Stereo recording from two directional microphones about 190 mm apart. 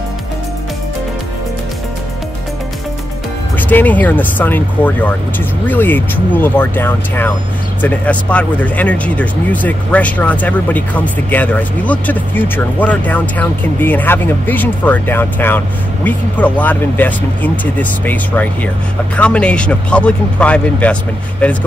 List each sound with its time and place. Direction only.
3.5 s speech: 10° left (ahead or behind)